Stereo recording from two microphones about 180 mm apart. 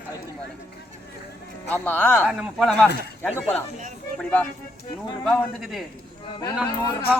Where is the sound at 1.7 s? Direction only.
10° left (ahead or behind).